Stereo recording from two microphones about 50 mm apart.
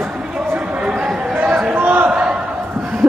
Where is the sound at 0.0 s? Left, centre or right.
Right.